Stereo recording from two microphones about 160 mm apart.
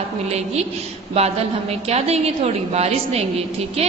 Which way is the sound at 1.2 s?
40° right (ahead or behind).